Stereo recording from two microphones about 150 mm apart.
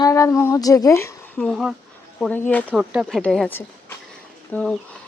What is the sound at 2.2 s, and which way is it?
Speech, 10° left (ahead or behind).